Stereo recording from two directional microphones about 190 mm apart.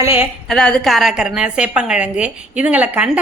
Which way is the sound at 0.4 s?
5° left (ahead or behind).